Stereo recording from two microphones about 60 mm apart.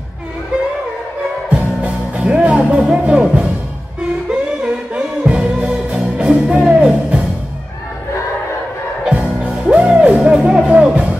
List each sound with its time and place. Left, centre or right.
1.5 s music: centre
9.0 s music: centre